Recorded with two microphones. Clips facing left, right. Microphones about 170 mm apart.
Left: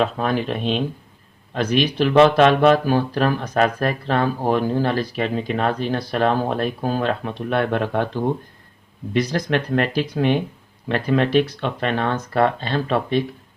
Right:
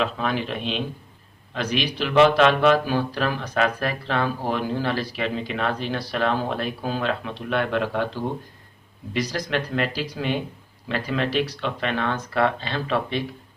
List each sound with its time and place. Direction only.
0.0 s speech: 45° left (ahead or behind)